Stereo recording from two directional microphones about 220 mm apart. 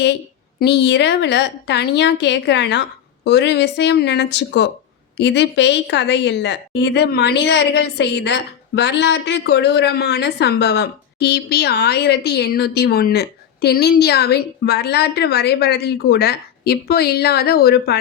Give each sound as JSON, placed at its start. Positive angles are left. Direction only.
{"t": 0.6, "sound": "a woman's voice", "side_deg": 50}